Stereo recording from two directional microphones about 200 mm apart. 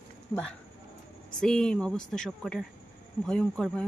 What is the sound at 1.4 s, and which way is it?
Speech, 5° left (ahead or behind).